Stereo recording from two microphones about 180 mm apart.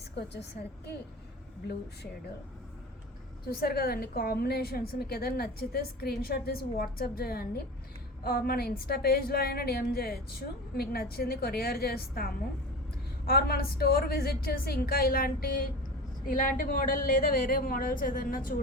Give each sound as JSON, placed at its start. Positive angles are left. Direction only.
{"t": 0.2, "sound": "a woman's voice", "side_deg": 70}
{"t": 3.5, "sound": "a woman's voice", "side_deg": 55}